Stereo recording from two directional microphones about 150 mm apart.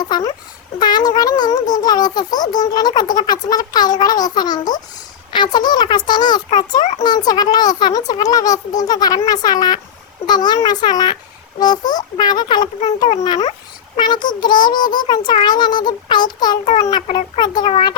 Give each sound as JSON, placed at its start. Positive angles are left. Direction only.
{"t": 0.1, "sound": "a child's voice", "side_deg": 25}
{"t": 17.1, "sound": "a child's voice", "side_deg": 45}
{"t": 17.4, "sound": "a child's voice", "side_deg": 30}